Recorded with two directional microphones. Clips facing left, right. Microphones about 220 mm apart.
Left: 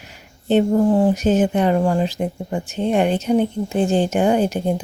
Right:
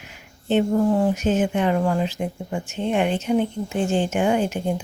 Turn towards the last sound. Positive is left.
turn(degrees=35)  # may be behind; listen again after turning